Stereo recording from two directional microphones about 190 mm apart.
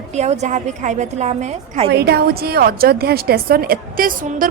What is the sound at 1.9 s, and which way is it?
A woman's voice, 60° right (ahead or behind).